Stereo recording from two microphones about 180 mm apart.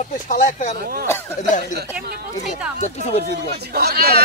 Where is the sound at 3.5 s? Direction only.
65° right (ahead or behind).